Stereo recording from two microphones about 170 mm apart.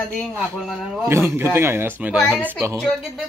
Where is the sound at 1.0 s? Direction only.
15° right (ahead or behind).